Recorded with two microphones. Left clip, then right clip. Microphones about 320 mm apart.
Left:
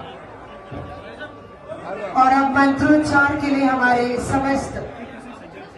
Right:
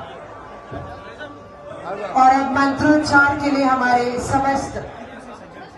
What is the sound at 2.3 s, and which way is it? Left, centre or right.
A woman's voice, right.